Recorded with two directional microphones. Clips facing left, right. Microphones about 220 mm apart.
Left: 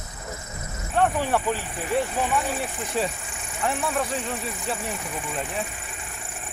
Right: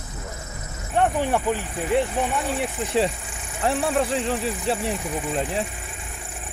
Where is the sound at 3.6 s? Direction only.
30° right (ahead or behind).